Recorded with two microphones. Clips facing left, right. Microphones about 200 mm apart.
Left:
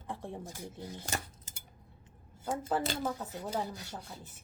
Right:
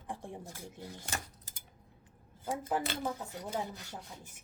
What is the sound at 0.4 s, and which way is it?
Speech, 15° left (ahead or behind).